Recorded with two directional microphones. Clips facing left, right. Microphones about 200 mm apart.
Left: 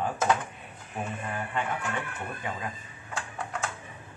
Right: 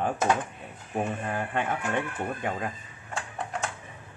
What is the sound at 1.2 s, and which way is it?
Speech, 50° right (ahead or behind).